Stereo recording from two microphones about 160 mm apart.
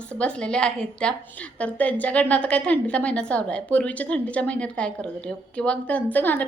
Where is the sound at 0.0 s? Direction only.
5° left (ahead or behind).